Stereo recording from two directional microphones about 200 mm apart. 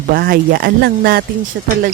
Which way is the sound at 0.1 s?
50° right (ahead or behind).